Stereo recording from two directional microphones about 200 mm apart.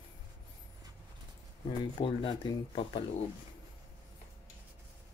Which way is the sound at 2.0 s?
25° left (ahead or behind).